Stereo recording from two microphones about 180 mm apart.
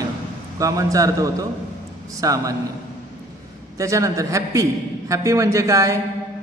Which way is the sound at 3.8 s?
20° right (ahead or behind).